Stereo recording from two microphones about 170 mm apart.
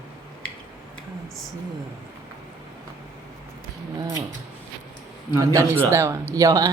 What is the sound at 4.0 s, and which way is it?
Speech, 20° right (ahead or behind).